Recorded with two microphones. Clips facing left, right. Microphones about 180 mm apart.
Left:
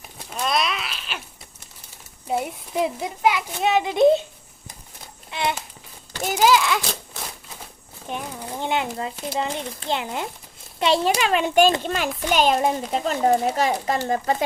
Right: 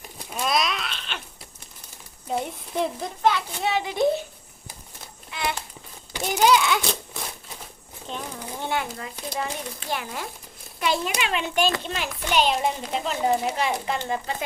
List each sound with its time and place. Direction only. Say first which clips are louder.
0.3 s a sound: left 1 dB; 5° right (ahead or behind)
2.2 s a child's voice: left 3 dB; 5° left (ahead or behind)
5.3 s speech: left 4 dB; 25° left (ahead or behind)
6.2 s a child's voice: left 1 dB; centre (ahead or behind)
8.1 s a child's voice: left 3 dB; 15° left (ahead or behind); by 14.3 s 45° left (ahead or behind)